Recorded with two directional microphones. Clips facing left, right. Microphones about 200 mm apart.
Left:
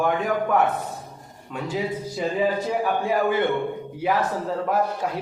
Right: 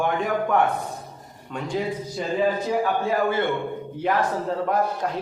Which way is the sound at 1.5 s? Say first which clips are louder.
Even; 5° left (ahead or behind).